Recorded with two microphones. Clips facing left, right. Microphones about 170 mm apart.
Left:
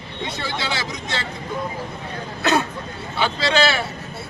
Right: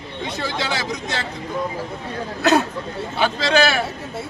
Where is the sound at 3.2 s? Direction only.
45° right (ahead or behind).